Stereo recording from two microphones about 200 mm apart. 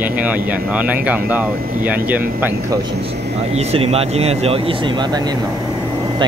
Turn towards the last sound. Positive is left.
turn(degrees=-25)  # may be behind; listen again after turning